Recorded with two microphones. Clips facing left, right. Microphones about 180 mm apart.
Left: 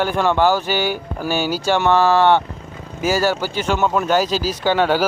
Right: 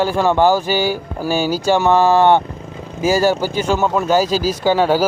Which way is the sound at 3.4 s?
45° right (ahead or behind).